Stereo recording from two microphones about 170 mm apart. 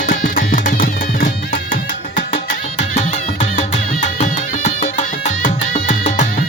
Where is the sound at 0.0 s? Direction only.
55° left (ahead or behind).